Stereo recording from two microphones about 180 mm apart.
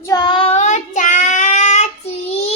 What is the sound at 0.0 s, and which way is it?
Child singing, 20° left (ahead or behind).